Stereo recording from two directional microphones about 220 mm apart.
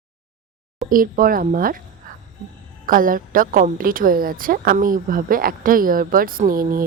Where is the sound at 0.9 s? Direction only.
40° right (ahead or behind).